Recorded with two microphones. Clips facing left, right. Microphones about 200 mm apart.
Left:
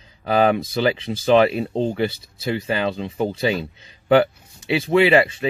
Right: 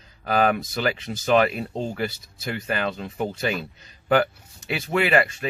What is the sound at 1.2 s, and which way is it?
Speech, 30° left (ahead or behind).